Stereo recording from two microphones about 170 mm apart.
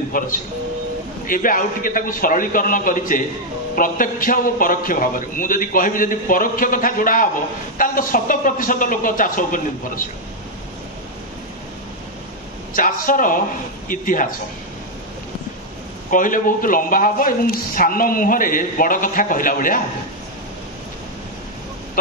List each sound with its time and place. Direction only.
0.1 s speech: 55° left (ahead or behind)
12.7 s speech: 55° left (ahead or behind)
16.1 s speech: 50° left (ahead or behind)